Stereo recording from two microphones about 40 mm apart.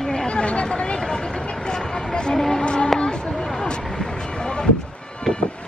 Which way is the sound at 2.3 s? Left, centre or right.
Centre.